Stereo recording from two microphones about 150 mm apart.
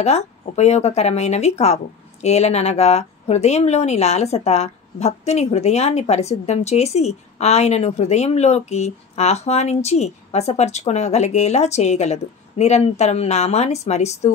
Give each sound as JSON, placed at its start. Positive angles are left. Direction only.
{"t": 0.0, "sound": "speech", "side_deg": 45}